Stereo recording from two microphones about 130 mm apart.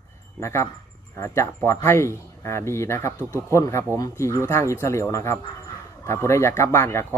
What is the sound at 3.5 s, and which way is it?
Speech, 20° left (ahead or behind).